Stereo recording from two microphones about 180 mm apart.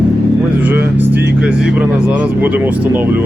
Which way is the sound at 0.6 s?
10° right (ahead or behind).